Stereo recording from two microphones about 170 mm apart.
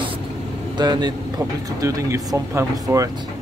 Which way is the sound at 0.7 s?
25° right (ahead or behind).